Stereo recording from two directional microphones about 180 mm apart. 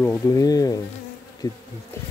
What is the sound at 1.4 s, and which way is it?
Bee, 20° left (ahead or behind).